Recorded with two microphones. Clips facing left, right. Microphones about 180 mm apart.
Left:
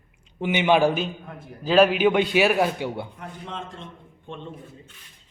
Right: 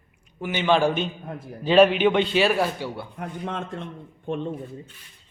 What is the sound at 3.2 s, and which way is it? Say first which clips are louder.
Speech: right 5 dB; 55° right (ahead or behind).